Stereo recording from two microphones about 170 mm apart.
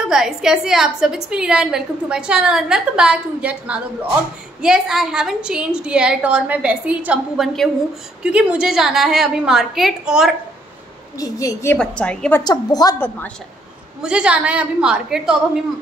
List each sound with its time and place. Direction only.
0.1 s a woman's voice: 5° right (ahead or behind)
11.1 s a woman's voice: 20° left (ahead or behind)
11.8 s a woman's voice: 5° left (ahead or behind)
12.4 s a woman's voice: 25° left (ahead or behind)
14.0 s a woman's voice: 5° right (ahead or behind)